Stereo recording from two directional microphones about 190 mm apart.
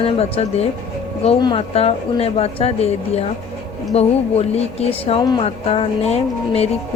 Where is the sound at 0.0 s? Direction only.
30° left (ahead or behind).